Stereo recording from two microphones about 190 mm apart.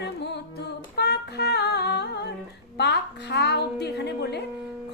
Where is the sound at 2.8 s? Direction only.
60° left (ahead or behind).